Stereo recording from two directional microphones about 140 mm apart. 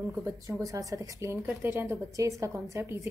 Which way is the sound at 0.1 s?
20° right (ahead or behind).